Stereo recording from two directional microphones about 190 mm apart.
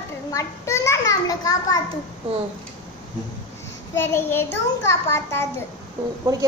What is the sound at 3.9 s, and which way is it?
A child's voice, 15° left (ahead or behind).